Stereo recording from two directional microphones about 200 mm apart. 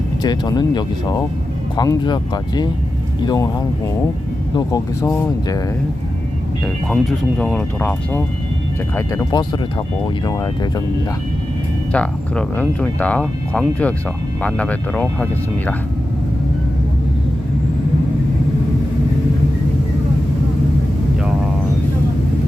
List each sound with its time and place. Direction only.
0.2 s speech: 20° left (ahead or behind)
4.5 s speech: 15° left (ahead or behind)
6.9 s speech: 5° left (ahead or behind)
11.9 s speech: 5° left (ahead or behind)